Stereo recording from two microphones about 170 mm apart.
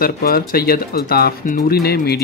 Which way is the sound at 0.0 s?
60° left (ahead or behind).